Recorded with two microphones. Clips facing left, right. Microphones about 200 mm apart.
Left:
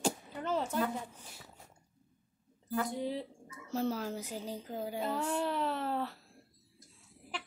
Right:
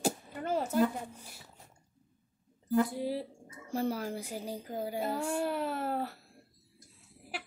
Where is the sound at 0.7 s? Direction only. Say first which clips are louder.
Right 5 dB; 10° right (ahead or behind).